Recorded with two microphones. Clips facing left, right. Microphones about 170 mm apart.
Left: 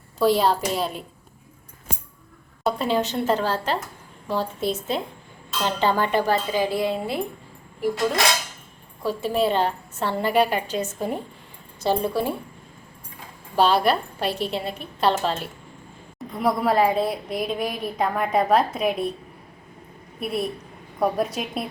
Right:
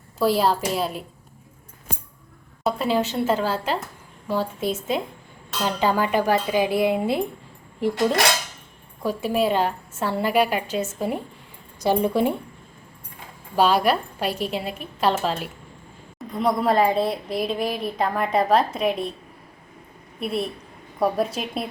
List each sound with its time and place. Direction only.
0.2 s a woman's voice: 5° right (ahead or behind)
2.6 s speech: 5° right (ahead or behind)
9.0 s a woman's voice: 10° right (ahead or behind)
11.8 s speech: 15° right (ahead or behind)
13.6 s a woman's voice: 10° right (ahead or behind)
20.1 s a woman's voice: centre (ahead or behind)